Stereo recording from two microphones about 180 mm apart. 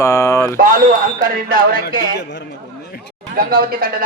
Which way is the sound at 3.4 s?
55° right (ahead or behind).